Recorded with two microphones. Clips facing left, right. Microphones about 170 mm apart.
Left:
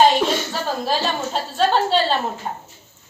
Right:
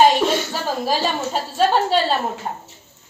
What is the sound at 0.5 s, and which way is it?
A woman's voice, 10° right (ahead or behind).